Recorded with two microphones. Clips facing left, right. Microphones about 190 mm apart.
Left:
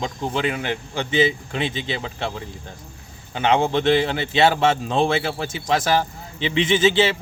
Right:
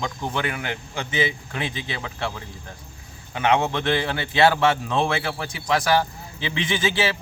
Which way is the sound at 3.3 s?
30° left (ahead or behind).